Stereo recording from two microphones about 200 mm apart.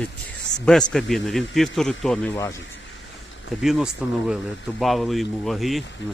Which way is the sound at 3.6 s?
Centre (ahead or behind).